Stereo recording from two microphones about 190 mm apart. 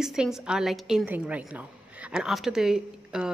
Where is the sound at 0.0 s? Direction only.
Centre (ahead or behind).